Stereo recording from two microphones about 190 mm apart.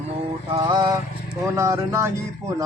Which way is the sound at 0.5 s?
25° right (ahead or behind).